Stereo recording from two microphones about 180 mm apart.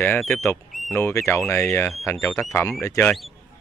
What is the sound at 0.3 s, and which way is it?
Speech, 15° left (ahead or behind).